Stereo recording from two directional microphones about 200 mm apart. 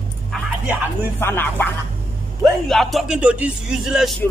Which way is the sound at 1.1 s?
10° left (ahead or behind).